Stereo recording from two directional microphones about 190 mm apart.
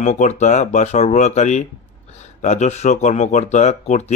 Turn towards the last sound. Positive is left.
turn(degrees=35)  # may be behind; listen again after turning